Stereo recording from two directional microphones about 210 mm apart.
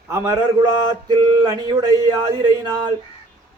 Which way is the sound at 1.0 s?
20° right (ahead or behind).